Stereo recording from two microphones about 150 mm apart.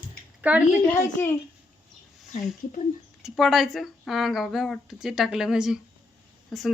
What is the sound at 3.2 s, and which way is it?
Speech, centre (ahead or behind).